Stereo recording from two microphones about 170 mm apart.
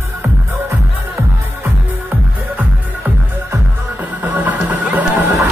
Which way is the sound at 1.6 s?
10° right (ahead or behind).